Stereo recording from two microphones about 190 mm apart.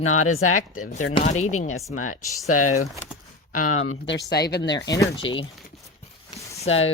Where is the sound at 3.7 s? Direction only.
90° left.